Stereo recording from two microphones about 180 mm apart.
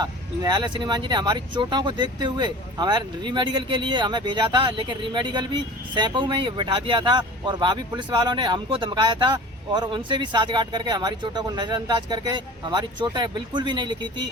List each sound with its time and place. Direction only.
0.0 s speech: 25° right (ahead or behind)